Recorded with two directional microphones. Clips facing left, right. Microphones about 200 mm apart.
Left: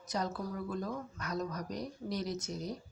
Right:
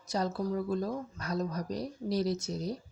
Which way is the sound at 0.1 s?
30° right (ahead or behind).